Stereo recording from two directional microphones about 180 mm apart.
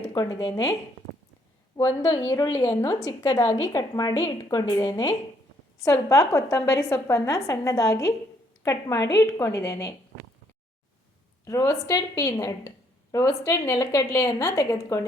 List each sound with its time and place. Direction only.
0.1 s a woman's voice: 20° left (ahead or behind)
11.4 s a woman's voice: 20° left (ahead or behind)